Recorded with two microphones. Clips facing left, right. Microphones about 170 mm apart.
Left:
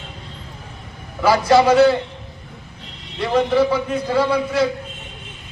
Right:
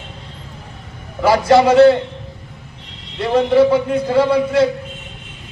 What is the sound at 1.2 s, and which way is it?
Speech, 25° right (ahead or behind).